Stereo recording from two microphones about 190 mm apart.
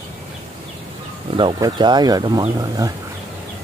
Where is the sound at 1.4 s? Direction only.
20° right (ahead or behind).